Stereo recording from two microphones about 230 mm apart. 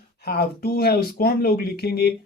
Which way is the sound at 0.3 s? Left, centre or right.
Left.